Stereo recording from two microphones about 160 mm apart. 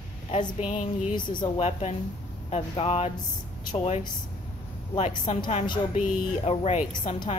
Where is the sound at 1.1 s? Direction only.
30° left (ahead or behind).